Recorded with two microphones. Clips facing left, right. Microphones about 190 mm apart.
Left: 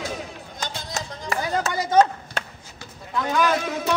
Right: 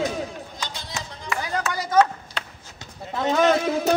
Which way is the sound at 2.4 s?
45° left (ahead or behind).